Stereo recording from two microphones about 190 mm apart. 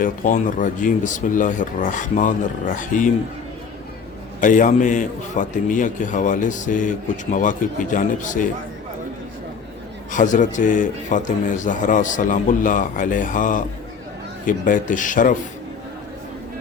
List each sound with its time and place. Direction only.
0.0 s a man's voice: 45° left (ahead or behind)
4.4 s a man's voice: 45° left (ahead or behind)
10.1 s a man's voice: 40° left (ahead or behind)